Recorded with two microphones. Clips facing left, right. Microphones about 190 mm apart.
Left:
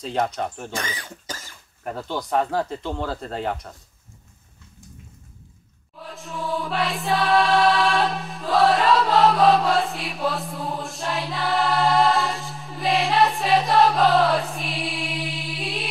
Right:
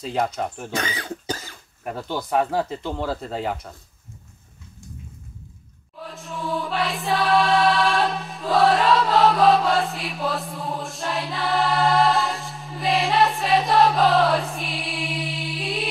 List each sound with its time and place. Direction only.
0.0 s speech: 5° right (ahead or behind)
0.7 s speech: 65° right (ahead or behind)
1.9 s speech: 5° right (ahead or behind)
6.0 s chant: centre (ahead or behind)